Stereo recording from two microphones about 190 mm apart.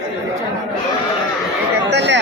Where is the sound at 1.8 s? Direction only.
65° right (ahead or behind).